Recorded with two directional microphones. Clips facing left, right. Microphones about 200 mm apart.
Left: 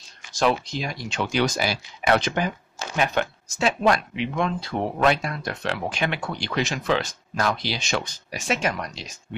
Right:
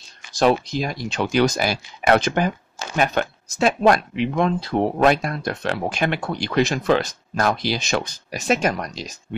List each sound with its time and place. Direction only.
0.4 s speech: 40° right (ahead or behind)